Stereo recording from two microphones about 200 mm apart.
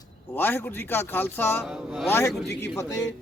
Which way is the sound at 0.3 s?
10° left (ahead or behind).